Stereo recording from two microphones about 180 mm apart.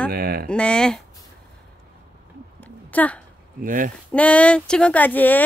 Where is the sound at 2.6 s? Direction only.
10° left (ahead or behind).